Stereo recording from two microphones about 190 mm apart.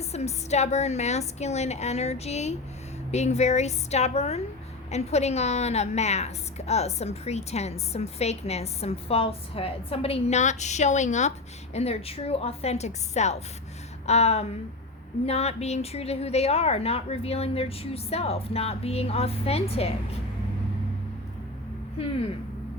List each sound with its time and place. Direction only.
0.0 s a woman's voice: 35° left (ahead or behind)